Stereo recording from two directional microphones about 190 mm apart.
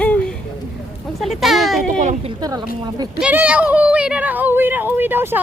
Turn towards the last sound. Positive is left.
turn(degrees=-10)  # may be behind; listen again after turning